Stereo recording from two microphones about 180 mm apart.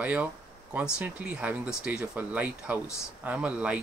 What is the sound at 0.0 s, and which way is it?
Speech, 10° right (ahead or behind).